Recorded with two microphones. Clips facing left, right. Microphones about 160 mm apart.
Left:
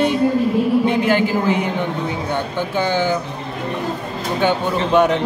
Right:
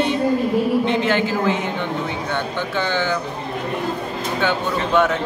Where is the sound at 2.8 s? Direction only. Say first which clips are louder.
Left 4 dB; 15° left (ahead or behind).